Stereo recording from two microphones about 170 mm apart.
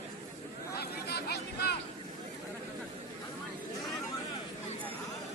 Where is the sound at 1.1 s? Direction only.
70° left (ahead or behind).